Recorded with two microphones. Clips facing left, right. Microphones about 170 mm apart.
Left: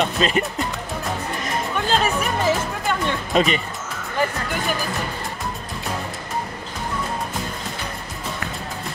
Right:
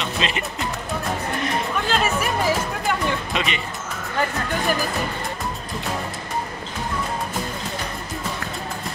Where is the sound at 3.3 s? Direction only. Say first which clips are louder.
Left 7 dB; 40° left (ahead or behind).